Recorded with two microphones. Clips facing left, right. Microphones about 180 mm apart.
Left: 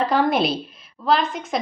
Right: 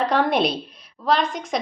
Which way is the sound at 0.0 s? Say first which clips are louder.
Left 1 dB; centre (ahead or behind).